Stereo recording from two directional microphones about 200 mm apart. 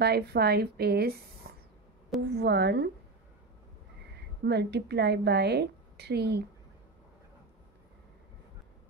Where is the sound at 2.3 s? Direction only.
55° right (ahead or behind).